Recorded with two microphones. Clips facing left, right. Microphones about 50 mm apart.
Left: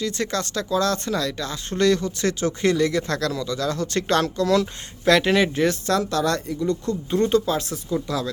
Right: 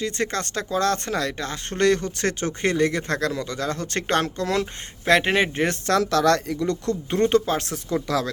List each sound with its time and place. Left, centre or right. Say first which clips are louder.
0.0 s speech: even; right
5.8 s speech: right 2 dB; right